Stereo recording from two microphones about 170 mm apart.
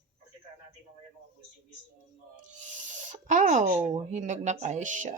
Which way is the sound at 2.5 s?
45° right (ahead or behind).